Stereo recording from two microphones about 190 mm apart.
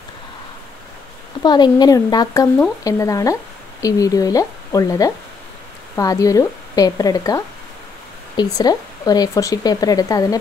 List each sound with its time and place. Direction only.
1.4 s speech: 20° left (ahead or behind)